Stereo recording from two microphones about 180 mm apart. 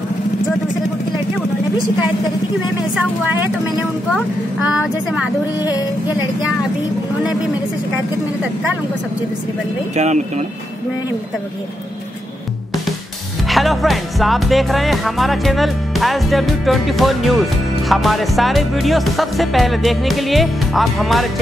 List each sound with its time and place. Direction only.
4.1 s speech: 5° right (ahead or behind)
5.6 s music: 20° left (ahead or behind)
9.9 s speech: 40° right (ahead or behind)
13.5 s speech: centre (ahead or behind)